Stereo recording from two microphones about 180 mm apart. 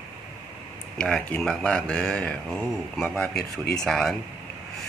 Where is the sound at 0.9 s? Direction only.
5° left (ahead or behind).